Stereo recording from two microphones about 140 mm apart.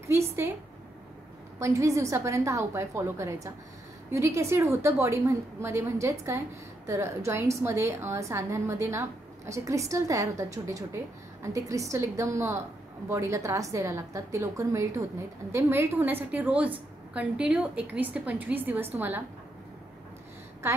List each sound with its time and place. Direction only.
0.0 s a sound: 20° right (ahead or behind)
1.6 s a woman's voice: 20° right (ahead or behind)
11.4 s a woman's voice: 25° right (ahead or behind)
20.6 s a woman's voice: 20° right (ahead or behind)